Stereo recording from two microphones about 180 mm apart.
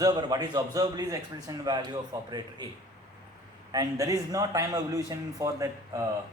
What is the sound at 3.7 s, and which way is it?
A man's voice, 20° right (ahead or behind).